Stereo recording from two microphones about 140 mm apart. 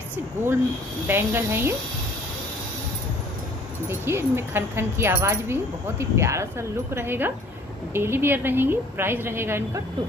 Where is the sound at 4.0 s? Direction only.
15° right (ahead or behind).